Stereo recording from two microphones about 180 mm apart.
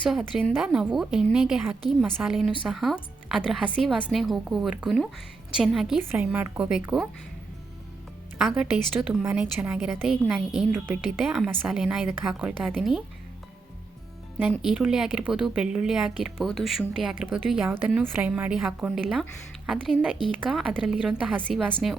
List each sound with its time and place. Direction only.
0.1 s a woman's voice: centre (ahead or behind)
8.4 s a woman's voice: 5° right (ahead or behind)
10.7 s a woman's voice: 10° right (ahead or behind)
14.5 s a woman's voice: centre (ahead or behind)